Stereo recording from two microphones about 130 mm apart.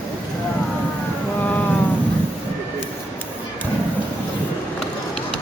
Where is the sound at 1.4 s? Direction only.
15° left (ahead or behind).